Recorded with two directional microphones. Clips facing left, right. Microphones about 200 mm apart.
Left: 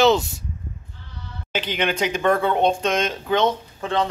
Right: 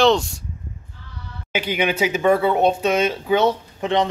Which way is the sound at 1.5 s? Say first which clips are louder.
Right 2 dB; 10° right (ahead or behind).